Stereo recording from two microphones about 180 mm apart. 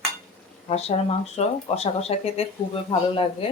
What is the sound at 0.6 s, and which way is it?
Speech, 35° left (ahead or behind).